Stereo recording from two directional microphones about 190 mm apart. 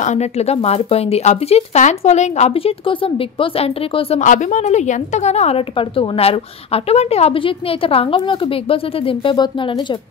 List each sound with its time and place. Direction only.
0.0 s a woman's voice: 35° left (ahead or behind)
4.2 s a woman's voice: 40° left (ahead or behind); by 9.9 s 25° left (ahead or behind)